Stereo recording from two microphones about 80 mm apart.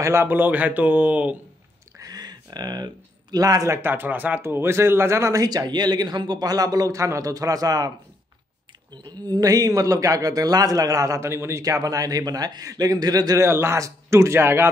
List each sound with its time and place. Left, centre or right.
0.0 s speech: right
2.0 s a sound: right
3.7 s speech: right
5.4 s a man's voice: right
8.9 s a man's voice: right
13.5 s speech: right